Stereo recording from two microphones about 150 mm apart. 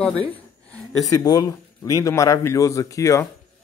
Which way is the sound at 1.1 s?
25° left (ahead or behind).